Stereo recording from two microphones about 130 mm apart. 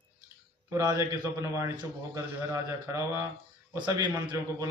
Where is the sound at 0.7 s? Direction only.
25° right (ahead or behind).